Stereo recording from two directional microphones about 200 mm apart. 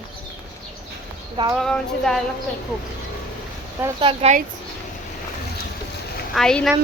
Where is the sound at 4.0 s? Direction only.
25° right (ahead or behind).